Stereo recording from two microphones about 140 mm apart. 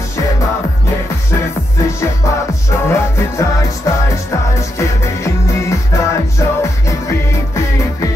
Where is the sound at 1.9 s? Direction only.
20° left (ahead or behind).